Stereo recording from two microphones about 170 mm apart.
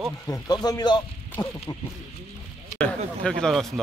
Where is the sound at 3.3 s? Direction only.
5° left (ahead or behind).